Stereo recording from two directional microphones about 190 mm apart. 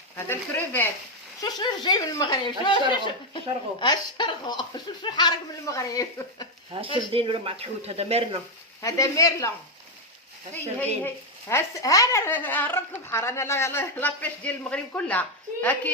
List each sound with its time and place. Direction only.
0.3 s speech: 10° left (ahead or behind)
1.4 s speech: 20° left (ahead or behind)
6.8 s speech: 30° right (ahead or behind)
8.8 s speech: 15° left (ahead or behind)
11.0 s speech: 15° left (ahead or behind)